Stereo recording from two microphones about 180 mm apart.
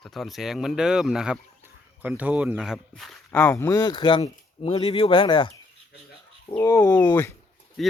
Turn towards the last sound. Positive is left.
turn(degrees=0)  # may be behind; listen again after turning